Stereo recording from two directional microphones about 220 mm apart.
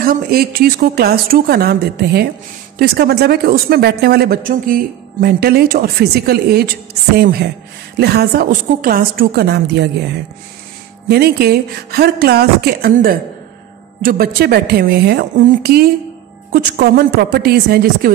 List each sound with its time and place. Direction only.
0.0 s speech: 40° right (ahead or behind)
11.1 s speech: 45° right (ahead or behind)